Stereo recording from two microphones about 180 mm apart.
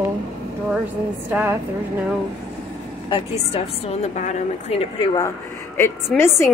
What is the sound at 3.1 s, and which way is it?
A woman's voice, 30° left (ahead or behind).